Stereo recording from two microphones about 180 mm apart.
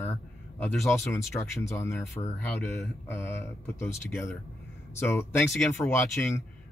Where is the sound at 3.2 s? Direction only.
10° left (ahead or behind).